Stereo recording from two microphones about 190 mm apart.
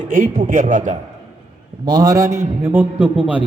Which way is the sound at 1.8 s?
20° right (ahead or behind).